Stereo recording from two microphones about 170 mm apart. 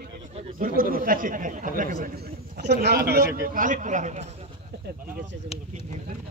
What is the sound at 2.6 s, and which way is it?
Speech, 80° right.